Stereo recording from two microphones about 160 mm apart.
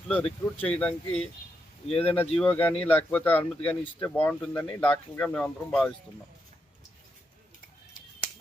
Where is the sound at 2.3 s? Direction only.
5° left (ahead or behind).